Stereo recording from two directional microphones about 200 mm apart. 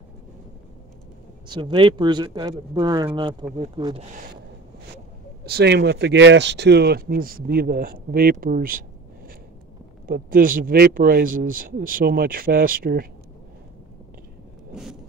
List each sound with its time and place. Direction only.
1.5 s speech: 25° right (ahead or behind)
5.4 s speech: 55° right (ahead or behind)
10.0 s speech: 45° right (ahead or behind)
14.7 s a sound: centre (ahead or behind)